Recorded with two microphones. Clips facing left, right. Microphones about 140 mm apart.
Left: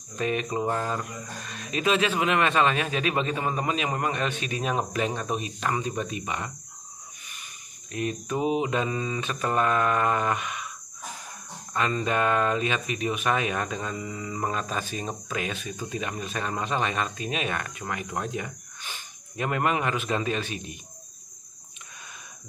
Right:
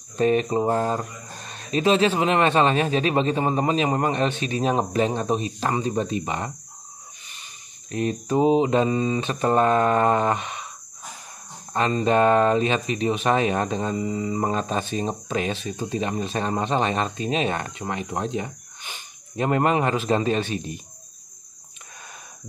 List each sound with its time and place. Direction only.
0.2 s speech: 35° right (ahead or behind)
7.9 s speech: 35° right (ahead or behind)
11.7 s speech: 30° right (ahead or behind)